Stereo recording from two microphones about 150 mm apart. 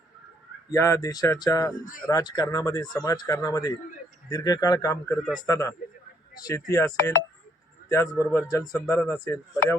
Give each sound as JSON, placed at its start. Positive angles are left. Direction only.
{"t": 0.7, "sound": "a man's voice", "side_deg": 20}